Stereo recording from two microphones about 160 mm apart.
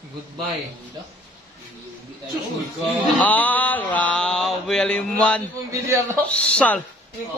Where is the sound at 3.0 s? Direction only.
10° left (ahead or behind).